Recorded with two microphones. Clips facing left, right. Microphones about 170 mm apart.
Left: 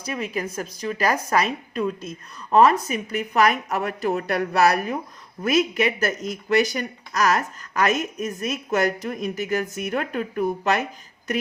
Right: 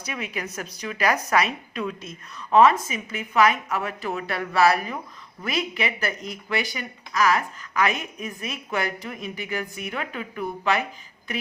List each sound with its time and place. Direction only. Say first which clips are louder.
0.1 s a woman's voice: left 5 dB; 35° left (ahead or behind)